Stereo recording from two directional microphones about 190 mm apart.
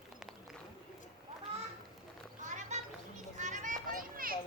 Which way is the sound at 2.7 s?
35° right (ahead or behind).